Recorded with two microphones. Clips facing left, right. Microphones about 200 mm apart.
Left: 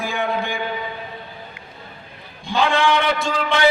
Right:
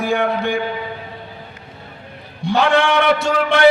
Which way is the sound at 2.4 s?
65° right (ahead or behind).